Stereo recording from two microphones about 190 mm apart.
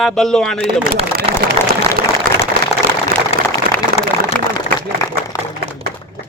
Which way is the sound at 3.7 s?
50° right (ahead or behind).